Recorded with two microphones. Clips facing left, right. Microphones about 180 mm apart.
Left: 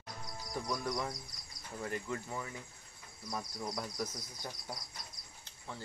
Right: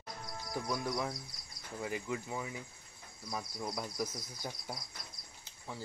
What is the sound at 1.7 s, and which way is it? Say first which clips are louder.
Speech: right 1 dB; 5° right (ahead or behind).